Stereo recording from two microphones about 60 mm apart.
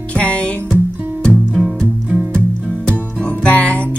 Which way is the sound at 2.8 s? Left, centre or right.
Centre.